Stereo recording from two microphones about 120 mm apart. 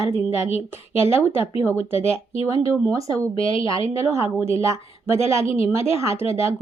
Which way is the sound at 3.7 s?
50° left (ahead or behind).